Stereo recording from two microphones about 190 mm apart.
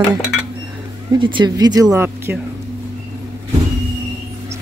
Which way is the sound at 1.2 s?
25° right (ahead or behind).